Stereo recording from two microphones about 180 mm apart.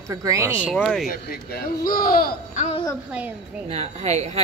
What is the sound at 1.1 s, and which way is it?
Speech, 50° left (ahead or behind).